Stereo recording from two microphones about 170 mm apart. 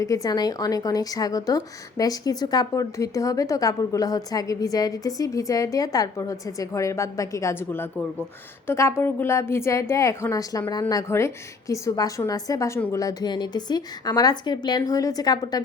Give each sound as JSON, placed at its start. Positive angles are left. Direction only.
{"t": 0.0, "sound": "a woman's voice", "side_deg": 20}